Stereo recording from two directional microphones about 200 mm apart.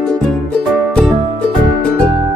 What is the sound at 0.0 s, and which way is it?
Music, 5° left (ahead or behind).